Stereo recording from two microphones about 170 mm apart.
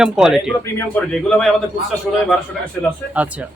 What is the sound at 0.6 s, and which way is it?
Speech, 5° left (ahead or behind).